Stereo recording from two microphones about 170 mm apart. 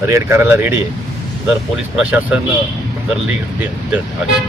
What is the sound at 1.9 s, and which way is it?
Speech, 10° right (ahead or behind).